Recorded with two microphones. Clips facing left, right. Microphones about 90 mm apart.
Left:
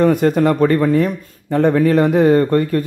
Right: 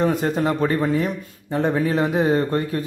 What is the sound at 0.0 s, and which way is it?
Speech, 55° left (ahead or behind).